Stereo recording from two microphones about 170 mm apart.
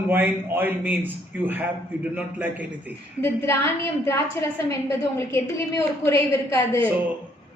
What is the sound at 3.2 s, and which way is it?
A woman's voice, 15° left (ahead or behind).